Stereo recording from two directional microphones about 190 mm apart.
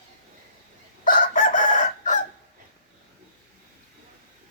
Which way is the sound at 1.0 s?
45° left (ahead or behind).